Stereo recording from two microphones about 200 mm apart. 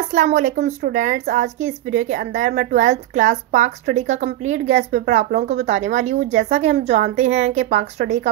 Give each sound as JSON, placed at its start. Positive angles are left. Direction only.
{"t": 0.1, "sound": "speech", "side_deg": -40}